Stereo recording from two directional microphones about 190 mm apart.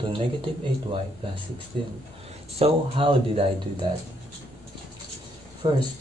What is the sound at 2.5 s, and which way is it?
Speech, 30° right (ahead or behind).